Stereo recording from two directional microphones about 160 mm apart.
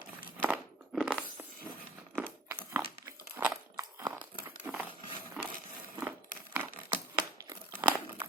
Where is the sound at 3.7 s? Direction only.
15° right (ahead or behind).